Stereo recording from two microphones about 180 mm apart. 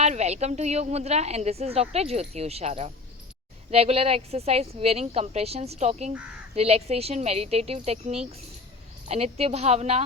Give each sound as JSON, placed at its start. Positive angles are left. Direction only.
{"t": 0.0, "sound": "a woman's voice", "side_deg": -35}